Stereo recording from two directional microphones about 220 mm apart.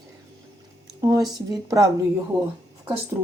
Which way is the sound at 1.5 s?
15° right (ahead or behind).